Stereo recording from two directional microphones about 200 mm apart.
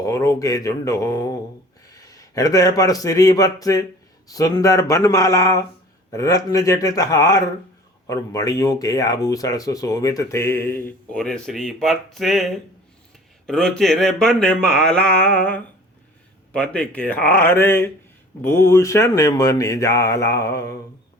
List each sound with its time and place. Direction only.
0.0 s a man's voice: 15° left (ahead or behind); by 12.5 s centre (ahead or behind)
13.5 s speech: centre (ahead or behind)